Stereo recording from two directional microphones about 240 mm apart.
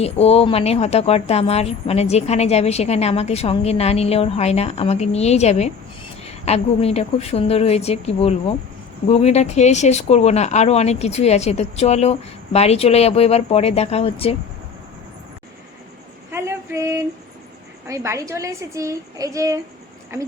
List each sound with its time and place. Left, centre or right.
0.0 s speech: left
16.3 s a sound: centre
17.8 s a woman's voice: centre